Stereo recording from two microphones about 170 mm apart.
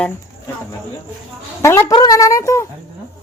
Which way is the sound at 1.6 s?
15° left (ahead or behind).